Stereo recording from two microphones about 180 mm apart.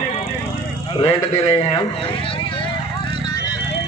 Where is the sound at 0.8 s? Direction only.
30° left (ahead or behind).